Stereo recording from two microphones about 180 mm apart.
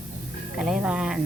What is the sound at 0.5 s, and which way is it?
Speech, 5° right (ahead or behind).